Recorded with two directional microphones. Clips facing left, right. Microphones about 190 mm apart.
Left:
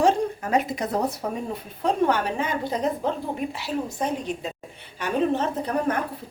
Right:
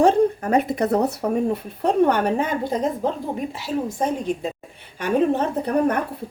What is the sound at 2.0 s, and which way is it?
A woman's voice, 55° right (ahead or behind).